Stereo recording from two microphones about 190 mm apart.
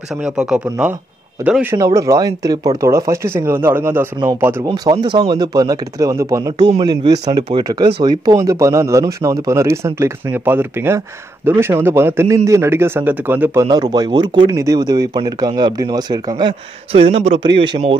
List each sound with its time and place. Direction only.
0.2 s a man's voice: 5° right (ahead or behind)
13.9 s speech: 20° right (ahead or behind)